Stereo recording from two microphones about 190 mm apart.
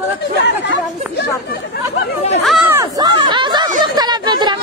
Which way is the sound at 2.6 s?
15° right (ahead or behind).